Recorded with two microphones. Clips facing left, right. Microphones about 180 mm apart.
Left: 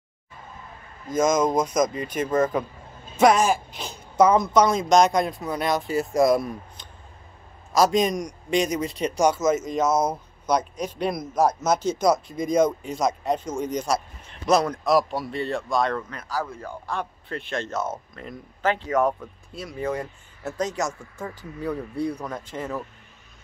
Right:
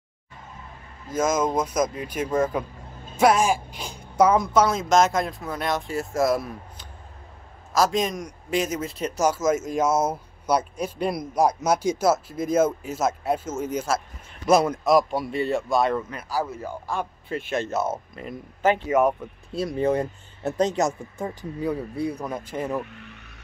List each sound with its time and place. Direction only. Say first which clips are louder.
1.1 s a man's voice: left 2 dB; 5° right (ahead or behind)
19.5 s speech: right 6 dB; 30° right (ahead or behind)
22.8 s vehicle: right 11 dB; 70° right (ahead or behind)